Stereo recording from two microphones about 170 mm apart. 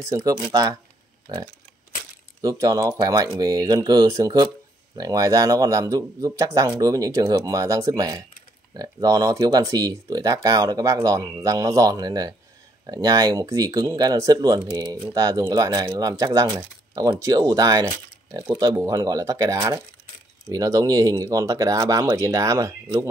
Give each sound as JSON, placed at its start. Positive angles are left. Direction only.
{"t": 0.0, "sound": "speech", "side_deg": -20}